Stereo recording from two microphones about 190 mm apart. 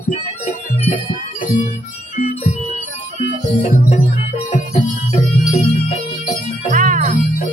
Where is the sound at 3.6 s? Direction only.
35° left (ahead or behind).